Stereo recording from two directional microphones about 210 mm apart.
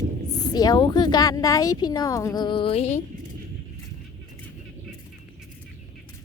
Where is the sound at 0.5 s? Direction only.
20° left (ahead or behind).